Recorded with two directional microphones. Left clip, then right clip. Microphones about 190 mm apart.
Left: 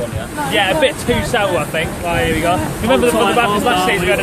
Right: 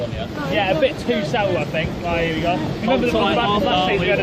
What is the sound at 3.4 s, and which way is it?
Speech, 50° left (ahead or behind).